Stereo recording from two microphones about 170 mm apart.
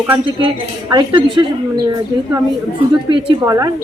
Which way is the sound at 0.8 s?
25° right (ahead or behind).